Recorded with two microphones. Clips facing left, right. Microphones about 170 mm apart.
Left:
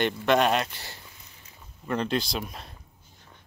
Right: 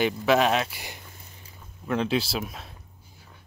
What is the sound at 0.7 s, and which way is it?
Speech, 15° right (ahead or behind).